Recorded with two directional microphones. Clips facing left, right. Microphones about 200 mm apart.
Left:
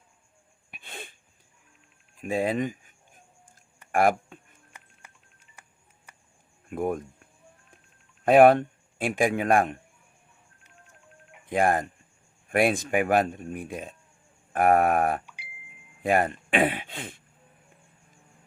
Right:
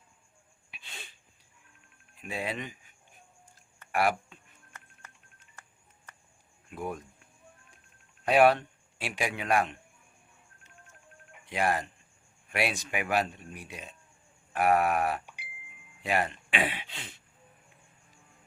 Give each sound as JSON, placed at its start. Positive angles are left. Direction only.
{"t": 0.7, "sound": "wheeze", "side_deg": 55}
{"t": 2.1, "sound": "a sound", "side_deg": 45}
{"t": 3.9, "sound": "speech", "side_deg": 45}
{"t": 4.7, "sound": "a sound", "side_deg": 10}
{"t": 6.7, "sound": "speech", "side_deg": 50}
{"t": 8.2, "sound": "speech", "side_deg": 50}
{"t": 11.4, "sound": "a man's voice", "side_deg": 50}